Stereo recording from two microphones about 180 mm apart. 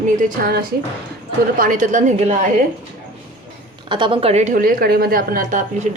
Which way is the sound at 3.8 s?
25° right (ahead or behind).